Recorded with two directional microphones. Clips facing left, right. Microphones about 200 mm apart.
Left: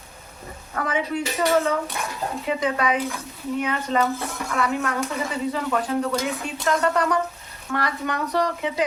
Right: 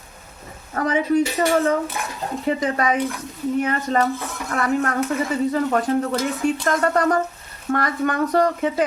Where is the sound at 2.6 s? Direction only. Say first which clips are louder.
Left 1 dB; 45° right (ahead or behind).